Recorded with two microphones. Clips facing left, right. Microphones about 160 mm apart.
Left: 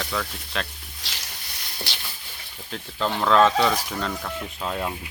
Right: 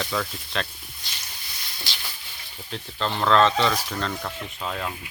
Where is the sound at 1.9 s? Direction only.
65° left (ahead or behind).